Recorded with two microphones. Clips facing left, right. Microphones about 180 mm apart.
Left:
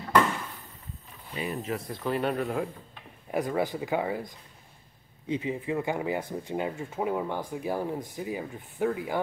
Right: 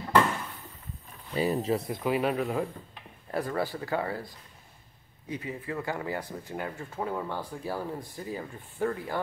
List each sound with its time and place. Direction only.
1.3 s speech: 35° right (ahead or behind)
2.0 s speech: 5° right (ahead or behind)
3.3 s speech: 15° left (ahead or behind)
5.3 s speech: 20° left (ahead or behind)